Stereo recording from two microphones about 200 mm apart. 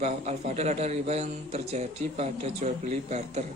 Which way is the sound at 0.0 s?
30° right (ahead or behind).